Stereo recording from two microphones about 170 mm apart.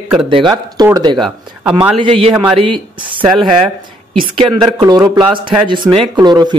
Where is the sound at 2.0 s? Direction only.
30° right (ahead or behind).